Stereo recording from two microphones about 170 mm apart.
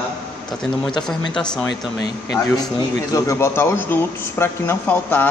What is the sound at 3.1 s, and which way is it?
Speech, 15° left (ahead or behind).